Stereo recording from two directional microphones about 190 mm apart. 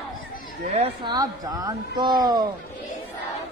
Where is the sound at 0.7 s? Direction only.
30° right (ahead or behind).